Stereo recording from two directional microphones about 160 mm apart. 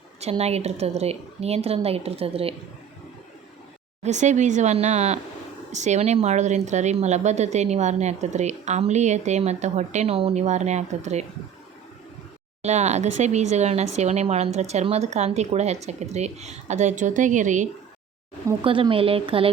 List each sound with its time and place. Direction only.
0.2 s a woman's voice: 40° right (ahead or behind)
4.0 s speech: 45° right (ahead or behind)
12.6 s speech: 45° right (ahead or behind)
18.6 s a woman's voice: 35° right (ahead or behind)